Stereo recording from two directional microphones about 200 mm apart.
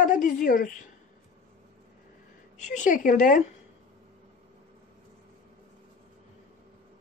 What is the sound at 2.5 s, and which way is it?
Speech, 35° left (ahead or behind).